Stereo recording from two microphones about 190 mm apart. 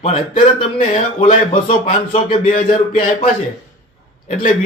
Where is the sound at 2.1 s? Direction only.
30° left (ahead or behind).